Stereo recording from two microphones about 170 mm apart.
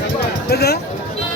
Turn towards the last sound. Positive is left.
turn(degrees=70)  # may be behind; listen again after turning